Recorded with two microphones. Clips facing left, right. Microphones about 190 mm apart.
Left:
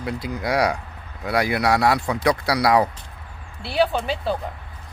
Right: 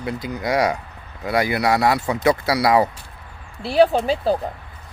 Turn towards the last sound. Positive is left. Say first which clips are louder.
# right 5 dB
turn(degrees=-35)  # may be behind; listen again after turning